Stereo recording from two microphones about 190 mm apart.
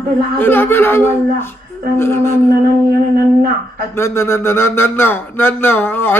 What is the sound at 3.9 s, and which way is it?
Speech, 15° left (ahead or behind).